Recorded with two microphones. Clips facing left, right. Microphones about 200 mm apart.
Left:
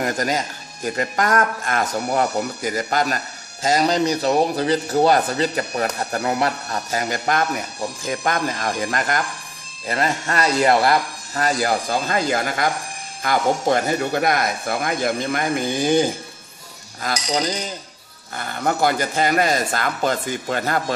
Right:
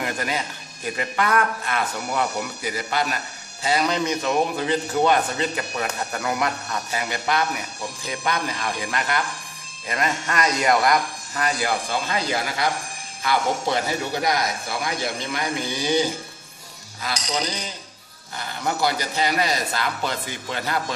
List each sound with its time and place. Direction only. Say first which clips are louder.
0.0 s a man's voice: left 5 dB; 45° left (ahead or behind)